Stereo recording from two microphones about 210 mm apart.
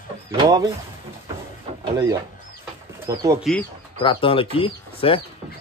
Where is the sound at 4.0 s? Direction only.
25° left (ahead or behind).